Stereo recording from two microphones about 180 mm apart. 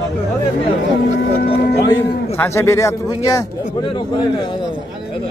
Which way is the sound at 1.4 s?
30° left (ahead or behind).